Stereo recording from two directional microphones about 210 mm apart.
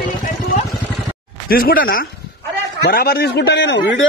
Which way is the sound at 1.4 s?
45° left (ahead or behind).